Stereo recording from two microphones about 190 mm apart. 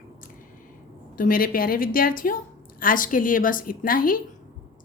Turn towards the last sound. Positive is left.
turn(degrees=50)  # may be behind; listen again after turning